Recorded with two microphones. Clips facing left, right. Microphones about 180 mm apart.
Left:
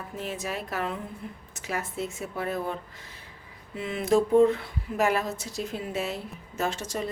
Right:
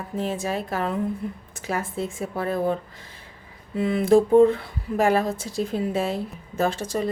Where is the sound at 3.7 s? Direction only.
35° right (ahead or behind).